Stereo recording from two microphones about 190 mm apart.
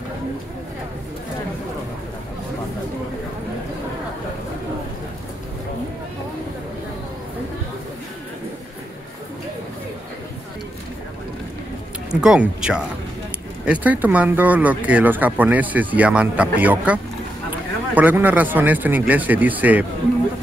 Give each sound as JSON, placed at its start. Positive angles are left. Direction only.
{"t": 12.1, "sound": "speech", "side_deg": -5}